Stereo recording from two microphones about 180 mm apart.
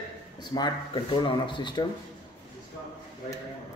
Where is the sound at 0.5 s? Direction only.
25° left (ahead or behind).